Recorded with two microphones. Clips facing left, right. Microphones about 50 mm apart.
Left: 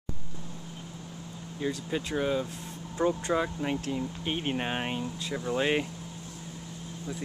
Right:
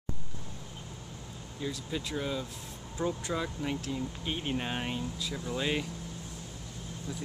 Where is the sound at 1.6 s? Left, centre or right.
Left.